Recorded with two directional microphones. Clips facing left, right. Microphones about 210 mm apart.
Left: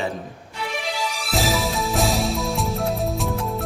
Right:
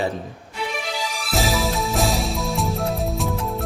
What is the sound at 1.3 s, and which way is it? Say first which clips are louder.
Music: right 1 dB; centre (ahead or behind).